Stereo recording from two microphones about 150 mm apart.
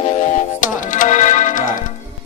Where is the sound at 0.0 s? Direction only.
45° left (ahead or behind).